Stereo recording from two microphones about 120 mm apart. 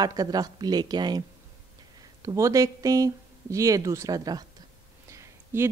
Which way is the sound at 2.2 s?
25° right (ahead or behind).